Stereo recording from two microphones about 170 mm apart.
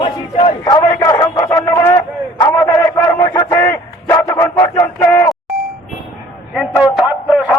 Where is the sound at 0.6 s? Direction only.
20° left (ahead or behind).